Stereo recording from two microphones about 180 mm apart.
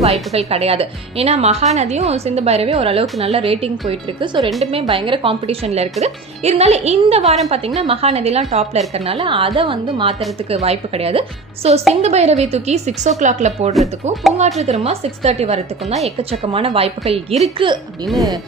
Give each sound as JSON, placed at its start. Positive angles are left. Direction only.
{"t": 0.0, "sound": "a woman's voice", "side_deg": -35}
{"t": 18.0, "sound": "speech", "side_deg": 0}